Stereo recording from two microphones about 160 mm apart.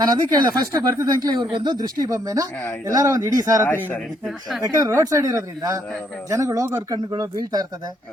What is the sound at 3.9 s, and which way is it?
Speech, 5° left (ahead or behind).